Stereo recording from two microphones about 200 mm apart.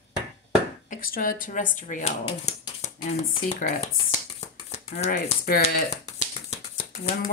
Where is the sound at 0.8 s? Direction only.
45° left (ahead or behind).